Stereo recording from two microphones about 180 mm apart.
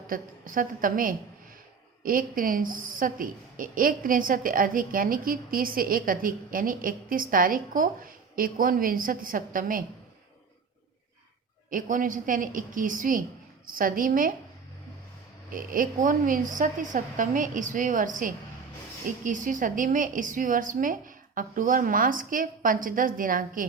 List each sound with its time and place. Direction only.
0.1 s a woman's voice: 50° right (ahead or behind)
11.7 s a woman's voice: 45° right (ahead or behind)
15.5 s a woman's voice: 50° right (ahead or behind)